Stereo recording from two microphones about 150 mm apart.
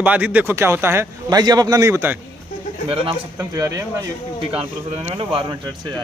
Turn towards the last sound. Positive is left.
turn(degrees=-30)  # may be behind; listen again after turning